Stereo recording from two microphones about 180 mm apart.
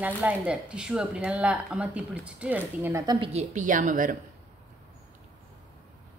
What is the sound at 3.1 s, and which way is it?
A woman's voice, 40° right (ahead or behind).